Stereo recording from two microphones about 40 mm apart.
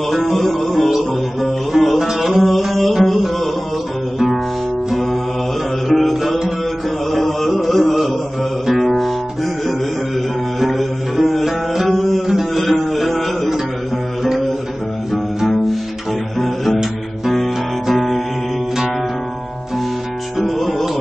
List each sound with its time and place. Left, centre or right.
0.1 s music: centre
4.9 s music: centre
7.1 s carnatic music: centre
7.9 s mantra: centre
8.7 s music: centre
11.9 s music: centre
15.4 s cello: centre
16.3 s music: centre
20.3 s music: centre